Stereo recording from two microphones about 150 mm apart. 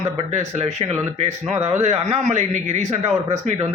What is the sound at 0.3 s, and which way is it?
A man's voice, 50° right (ahead or behind).